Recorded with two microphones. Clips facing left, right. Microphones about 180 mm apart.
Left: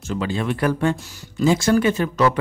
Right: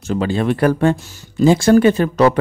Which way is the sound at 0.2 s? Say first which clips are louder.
Right 6 dB; 40° right (ahead or behind).